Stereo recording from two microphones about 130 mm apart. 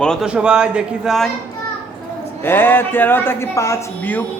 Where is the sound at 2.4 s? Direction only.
15° left (ahead or behind).